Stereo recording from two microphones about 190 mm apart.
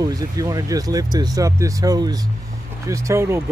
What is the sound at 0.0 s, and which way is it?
Speech, 20° right (ahead or behind).